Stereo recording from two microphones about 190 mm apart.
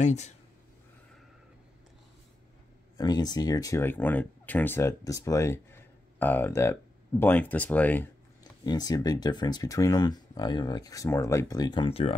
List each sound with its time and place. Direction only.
0.0 s speech: 35° left (ahead or behind)
3.0 s speech: 20° left (ahead or behind)
8.6 s speech: 20° left (ahead or behind)